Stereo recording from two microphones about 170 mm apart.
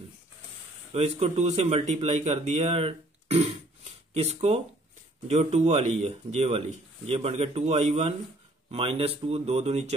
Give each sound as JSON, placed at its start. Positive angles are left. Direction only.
{"t": 0.9, "sound": "a man's voice", "side_deg": -40}